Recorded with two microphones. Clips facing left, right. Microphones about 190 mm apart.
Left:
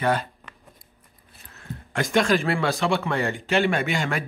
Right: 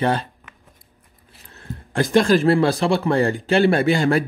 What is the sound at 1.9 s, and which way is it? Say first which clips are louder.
Speech: right 5 dB; 35° right (ahead or behind).